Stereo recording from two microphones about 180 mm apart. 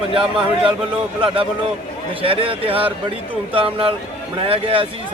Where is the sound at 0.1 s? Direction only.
30° right (ahead or behind).